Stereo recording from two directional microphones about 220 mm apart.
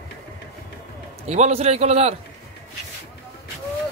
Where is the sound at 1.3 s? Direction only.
30° right (ahead or behind).